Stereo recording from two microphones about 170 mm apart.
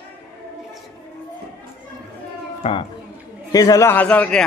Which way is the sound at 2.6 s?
30° left (ahead or behind).